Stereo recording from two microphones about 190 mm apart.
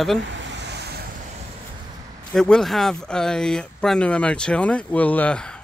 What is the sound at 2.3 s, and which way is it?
Speech, 5° left (ahead or behind).